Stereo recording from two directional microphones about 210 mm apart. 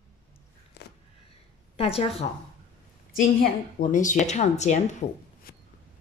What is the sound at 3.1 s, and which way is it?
A woman's voice, 40° left (ahead or behind).